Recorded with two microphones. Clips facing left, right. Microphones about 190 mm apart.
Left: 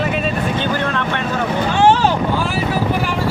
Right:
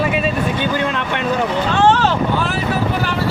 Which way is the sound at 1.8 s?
10° left (ahead or behind).